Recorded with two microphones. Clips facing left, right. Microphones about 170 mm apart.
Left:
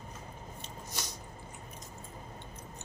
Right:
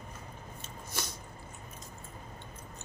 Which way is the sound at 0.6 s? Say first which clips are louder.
Right 2 dB; 20° left (ahead or behind).